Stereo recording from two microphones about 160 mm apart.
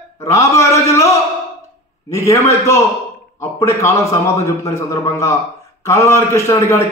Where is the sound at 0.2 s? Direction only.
20° left (ahead or behind).